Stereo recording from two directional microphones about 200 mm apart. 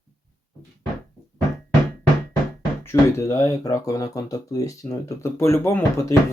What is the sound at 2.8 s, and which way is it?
Speech, 15° left (ahead or behind).